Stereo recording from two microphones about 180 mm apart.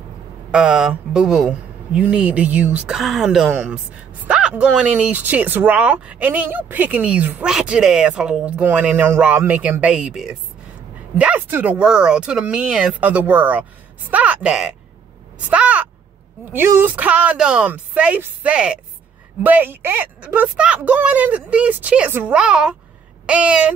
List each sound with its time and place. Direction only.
0.5 s speech: 5° right (ahead or behind)